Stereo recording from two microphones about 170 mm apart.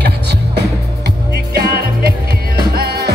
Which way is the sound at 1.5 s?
65° right (ahead or behind).